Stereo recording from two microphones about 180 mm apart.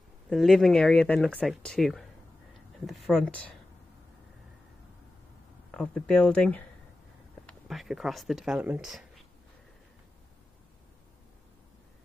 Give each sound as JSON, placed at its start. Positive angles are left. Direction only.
{"t": 0.3, "sound": "speech", "side_deg": 0}
{"t": 5.7, "sound": "speech", "side_deg": 5}